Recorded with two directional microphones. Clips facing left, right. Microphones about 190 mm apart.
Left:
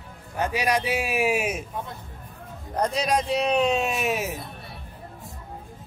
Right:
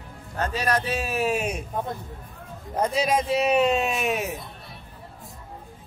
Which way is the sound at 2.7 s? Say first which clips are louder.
Right 1 dB; 5° right (ahead or behind).